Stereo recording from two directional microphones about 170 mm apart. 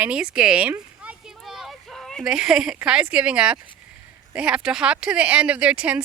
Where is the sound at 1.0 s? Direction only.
5° right (ahead or behind).